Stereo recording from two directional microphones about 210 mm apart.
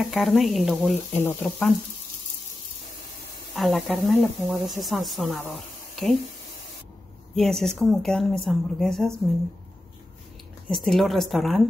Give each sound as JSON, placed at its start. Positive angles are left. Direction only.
{"t": 0.1, "sound": "speech", "side_deg": 0}
{"t": 3.5, "sound": "speech", "side_deg": 0}
{"t": 5.4, "sound": "a sound", "side_deg": 5}
{"t": 7.3, "sound": "speech", "side_deg": 0}
{"t": 10.7, "sound": "speech", "side_deg": 0}